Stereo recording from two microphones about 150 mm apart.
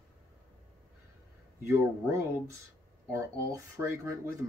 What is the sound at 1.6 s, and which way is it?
Speech, 15° right (ahead or behind).